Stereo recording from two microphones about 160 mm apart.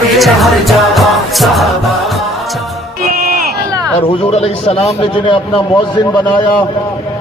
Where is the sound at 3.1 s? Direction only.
70° right (ahead or behind).